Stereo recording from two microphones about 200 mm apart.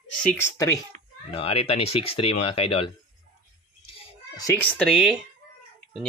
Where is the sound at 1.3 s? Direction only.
30° left (ahead or behind).